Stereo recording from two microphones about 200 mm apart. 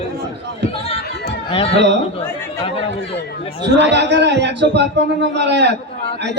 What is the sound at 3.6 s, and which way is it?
A man's voice, 60° right (ahead or behind).